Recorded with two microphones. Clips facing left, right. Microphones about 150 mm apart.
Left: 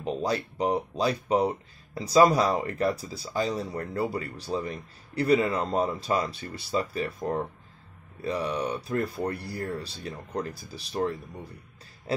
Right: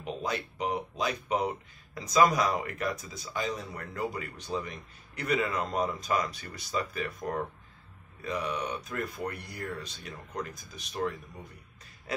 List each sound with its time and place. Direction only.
0.0 s speech: 35° left (ahead or behind)